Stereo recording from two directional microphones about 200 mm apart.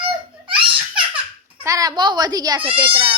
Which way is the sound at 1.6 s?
15° right (ahead or behind).